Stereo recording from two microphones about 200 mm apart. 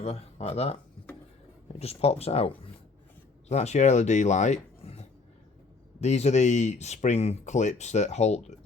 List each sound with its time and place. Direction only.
0.0 s speech: 30° left (ahead or behind)
3.5 s speech: 35° left (ahead or behind)